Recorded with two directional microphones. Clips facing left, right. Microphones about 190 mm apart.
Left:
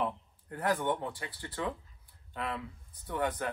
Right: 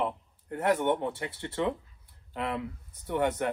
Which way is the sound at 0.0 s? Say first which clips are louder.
Right 3 dB; 25° right (ahead or behind).